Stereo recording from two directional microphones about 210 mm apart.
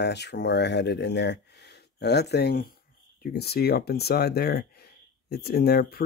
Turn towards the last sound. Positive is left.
turn(degrees=45)  # may be behind; listen again after turning